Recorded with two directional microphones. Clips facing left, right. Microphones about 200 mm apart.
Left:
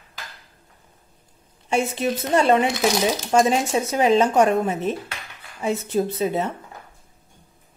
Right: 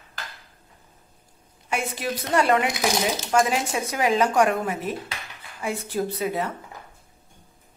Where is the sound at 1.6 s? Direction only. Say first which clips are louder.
Left 6 dB; 25° left (ahead or behind).